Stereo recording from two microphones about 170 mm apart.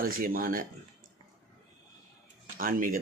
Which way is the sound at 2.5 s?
55° right (ahead or behind).